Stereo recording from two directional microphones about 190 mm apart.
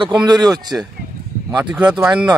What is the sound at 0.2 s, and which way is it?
Speech, 20° right (ahead or behind).